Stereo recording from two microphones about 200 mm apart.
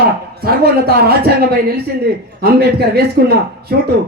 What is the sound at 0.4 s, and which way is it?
Speech, 50° right (ahead or behind).